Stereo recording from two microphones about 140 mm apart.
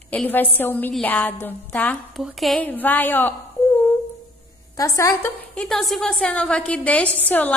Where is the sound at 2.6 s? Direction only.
10° left (ahead or behind).